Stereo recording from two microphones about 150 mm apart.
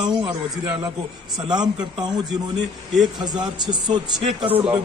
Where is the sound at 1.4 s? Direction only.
25° right (ahead or behind).